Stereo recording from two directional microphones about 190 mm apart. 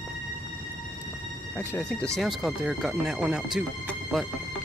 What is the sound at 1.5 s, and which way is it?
Speech, 5° left (ahead or behind).